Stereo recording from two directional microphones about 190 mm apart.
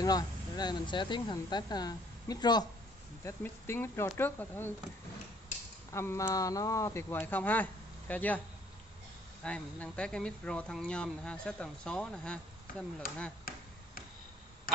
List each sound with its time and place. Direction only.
0.0 s speech: 20° left (ahead or behind)
5.9 s speech: 15° left (ahead or behind)
9.4 s speech: 5° left (ahead or behind)